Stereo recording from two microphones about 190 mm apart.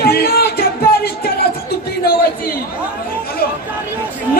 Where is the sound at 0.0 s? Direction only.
55° left (ahead or behind).